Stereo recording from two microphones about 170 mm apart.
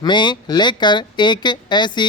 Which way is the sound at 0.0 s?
25° left (ahead or behind).